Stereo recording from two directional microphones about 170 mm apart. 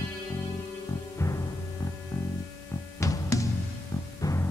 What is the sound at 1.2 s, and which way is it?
Music, 15° left (ahead or behind).